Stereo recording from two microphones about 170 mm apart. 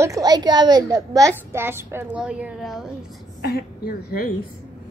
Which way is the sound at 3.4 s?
65° left (ahead or behind).